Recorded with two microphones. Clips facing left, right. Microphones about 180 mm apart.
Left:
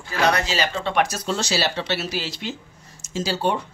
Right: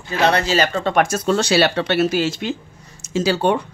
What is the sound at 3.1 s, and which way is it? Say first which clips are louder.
Speech: right 6 dB; 65° right (ahead or behind).